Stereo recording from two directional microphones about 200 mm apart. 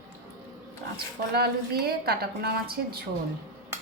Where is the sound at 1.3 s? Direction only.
50° right (ahead or behind).